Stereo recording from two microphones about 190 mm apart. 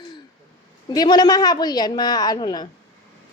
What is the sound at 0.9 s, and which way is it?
A woman's voice, 20° left (ahead or behind).